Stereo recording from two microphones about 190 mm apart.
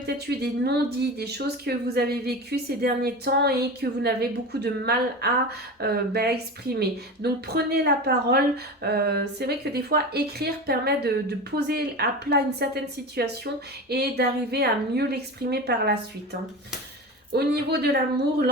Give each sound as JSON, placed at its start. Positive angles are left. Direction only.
{"t": 0.3, "sound": "speech", "side_deg": -60}
{"t": 17.3, "sound": "speech", "side_deg": -60}